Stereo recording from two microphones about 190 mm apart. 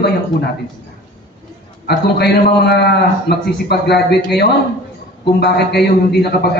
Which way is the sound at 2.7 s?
60° left (ahead or behind).